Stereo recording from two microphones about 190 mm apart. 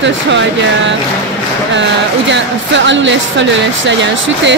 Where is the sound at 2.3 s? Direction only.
70° right (ahead or behind).